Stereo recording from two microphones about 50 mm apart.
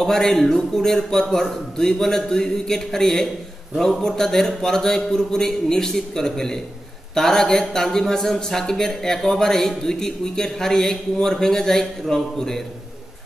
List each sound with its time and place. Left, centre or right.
0.0 s speech: centre